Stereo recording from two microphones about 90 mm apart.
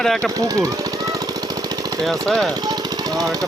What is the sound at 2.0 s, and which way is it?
Speech, 5° left (ahead or behind).